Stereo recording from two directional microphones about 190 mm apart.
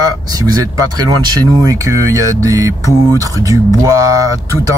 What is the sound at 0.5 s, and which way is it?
Speech, 20° right (ahead or behind).